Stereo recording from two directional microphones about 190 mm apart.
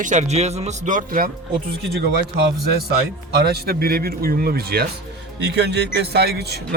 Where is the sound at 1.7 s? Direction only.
60° right (ahead or behind).